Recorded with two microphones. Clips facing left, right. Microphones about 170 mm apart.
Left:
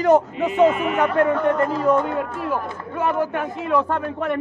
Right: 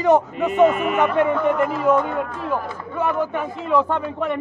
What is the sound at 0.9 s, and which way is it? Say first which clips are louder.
Speech: even; 5° right (ahead or behind).